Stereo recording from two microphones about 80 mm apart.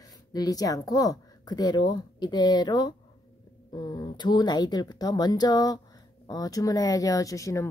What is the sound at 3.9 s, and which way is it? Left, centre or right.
Speech, left.